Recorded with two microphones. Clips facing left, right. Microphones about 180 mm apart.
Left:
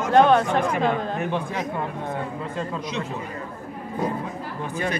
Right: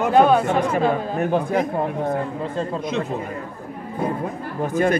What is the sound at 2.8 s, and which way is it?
Speech, 50° right (ahead or behind).